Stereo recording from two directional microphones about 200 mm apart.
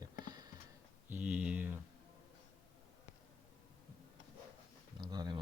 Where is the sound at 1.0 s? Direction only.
10° right (ahead or behind).